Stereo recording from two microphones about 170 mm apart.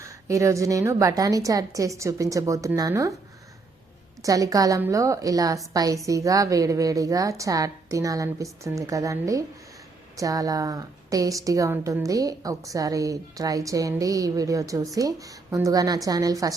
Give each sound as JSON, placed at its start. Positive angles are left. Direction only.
{"t": 0.0, "sound": "a woman's voice", "side_deg": -20}
{"t": 4.2, "sound": "a woman's voice", "side_deg": -20}